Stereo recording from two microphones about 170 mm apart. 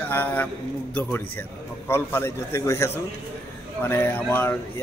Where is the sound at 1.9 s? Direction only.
15° left (ahead or behind).